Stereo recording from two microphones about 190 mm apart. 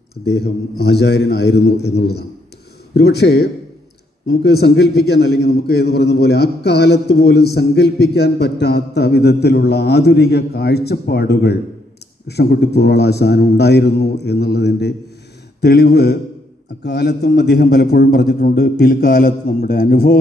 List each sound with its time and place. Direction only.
0.2 s a man's voice: 60° left (ahead or behind)